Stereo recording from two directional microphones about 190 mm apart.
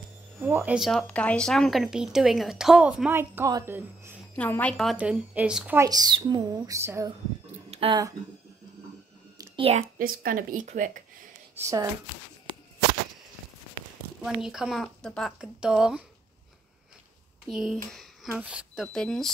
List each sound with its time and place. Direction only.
0.4 s speech: 10° right (ahead or behind)
4.4 s speech: 5° left (ahead or behind)
5.8 s a woman's voice: 20° right (ahead or behind)
7.7 s a sound: 30° right (ahead or behind)
9.4 s whispering: 30° right (ahead or behind)
9.9 s speech: 50° right (ahead or behind)
11.5 s speech: 15° right (ahead or behind)
14.2 s speech: 5° right (ahead or behind)
17.5 s speech: centre (ahead or behind)